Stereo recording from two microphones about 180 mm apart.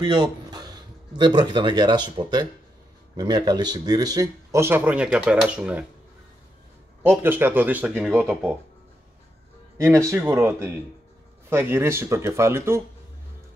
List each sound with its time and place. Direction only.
0.0 s speech: 25° right (ahead or behind); by 5.9 s 5° right (ahead or behind)
7.0 s speech: 10° right (ahead or behind)
9.8 s speech: 15° right (ahead or behind)